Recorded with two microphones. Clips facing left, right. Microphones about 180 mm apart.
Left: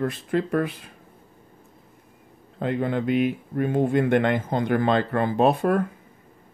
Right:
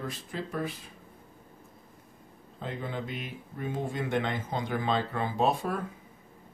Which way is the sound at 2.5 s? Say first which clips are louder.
Left 11 dB; 65° left (ahead or behind).